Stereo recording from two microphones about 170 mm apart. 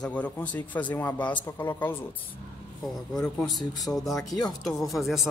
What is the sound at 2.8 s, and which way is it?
Speech, centre (ahead or behind).